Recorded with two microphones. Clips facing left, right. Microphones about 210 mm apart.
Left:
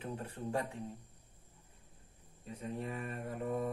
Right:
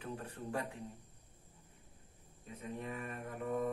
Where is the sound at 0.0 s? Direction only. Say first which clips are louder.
Left 3 dB; 25° left (ahead or behind).